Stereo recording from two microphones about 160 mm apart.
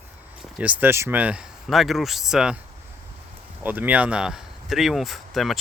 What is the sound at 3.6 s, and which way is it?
Speech, 10° right (ahead or behind).